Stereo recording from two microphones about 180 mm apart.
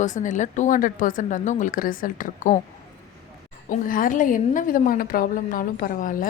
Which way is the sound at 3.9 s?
50° left (ahead or behind).